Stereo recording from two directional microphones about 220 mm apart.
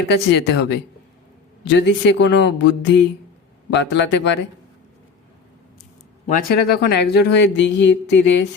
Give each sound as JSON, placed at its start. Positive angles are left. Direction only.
{"t": 0.1, "sound": "speech", "side_deg": 50}
{"t": 6.2, "sound": "speech", "side_deg": 40}